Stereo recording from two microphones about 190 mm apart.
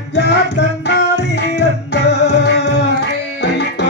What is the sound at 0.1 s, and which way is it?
Music, 65° left (ahead or behind).